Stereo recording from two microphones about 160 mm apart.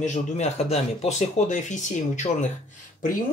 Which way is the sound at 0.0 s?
45° left (ahead or behind).